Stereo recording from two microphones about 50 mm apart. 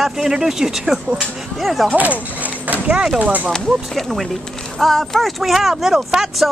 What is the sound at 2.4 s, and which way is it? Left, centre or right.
Horse, right.